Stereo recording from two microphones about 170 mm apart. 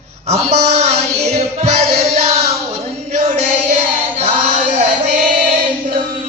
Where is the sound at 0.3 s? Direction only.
40° right (ahead or behind).